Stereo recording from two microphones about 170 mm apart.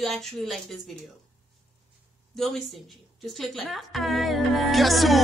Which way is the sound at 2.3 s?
Centre (ahead or behind).